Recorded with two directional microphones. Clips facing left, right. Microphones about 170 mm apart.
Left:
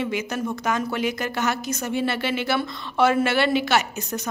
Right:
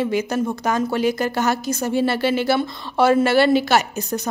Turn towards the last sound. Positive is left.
turn(degrees=-40)  # may be behind; listen again after turning